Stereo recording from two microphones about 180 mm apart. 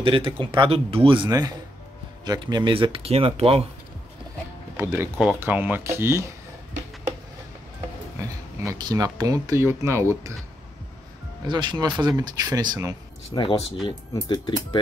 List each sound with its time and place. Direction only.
0.0 s speech: 30° right (ahead or behind)
4.7 s speech: 15° right (ahead or behind)
8.2 s speech: 15° right (ahead or behind)
11.4 s speech: 25° right (ahead or behind)
13.3 s speech: 30° left (ahead or behind)